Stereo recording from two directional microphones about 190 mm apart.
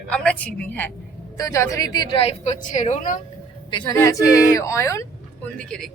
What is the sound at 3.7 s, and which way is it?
A woman's voice, 25° left (ahead or behind).